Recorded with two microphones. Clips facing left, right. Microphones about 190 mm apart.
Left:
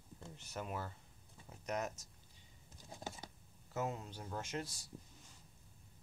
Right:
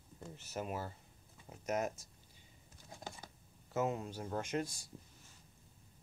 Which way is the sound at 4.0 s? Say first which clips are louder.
Right 5 dB; 40° right (ahead or behind).